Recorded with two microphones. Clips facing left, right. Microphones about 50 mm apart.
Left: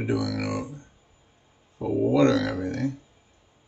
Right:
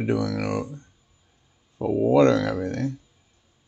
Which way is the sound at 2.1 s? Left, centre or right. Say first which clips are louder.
Right 3 dB; right.